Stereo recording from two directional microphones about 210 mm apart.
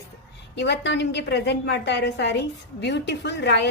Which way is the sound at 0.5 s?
55° left (ahead or behind).